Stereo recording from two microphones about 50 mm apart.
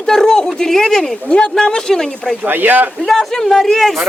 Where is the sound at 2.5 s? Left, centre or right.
Right.